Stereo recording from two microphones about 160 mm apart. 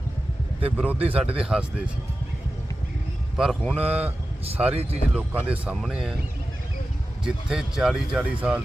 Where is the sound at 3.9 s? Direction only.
10° right (ahead or behind).